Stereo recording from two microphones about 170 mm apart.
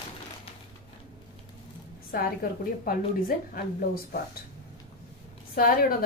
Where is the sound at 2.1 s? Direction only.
55° left (ahead or behind).